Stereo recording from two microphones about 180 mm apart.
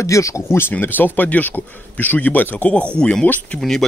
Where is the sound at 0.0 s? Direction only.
15° left (ahead or behind).